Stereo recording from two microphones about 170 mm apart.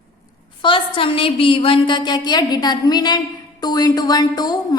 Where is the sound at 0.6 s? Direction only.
30° left (ahead or behind).